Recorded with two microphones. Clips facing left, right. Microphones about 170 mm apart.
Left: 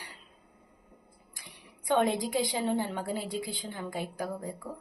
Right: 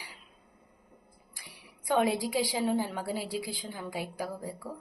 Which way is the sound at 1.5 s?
5° right (ahead or behind).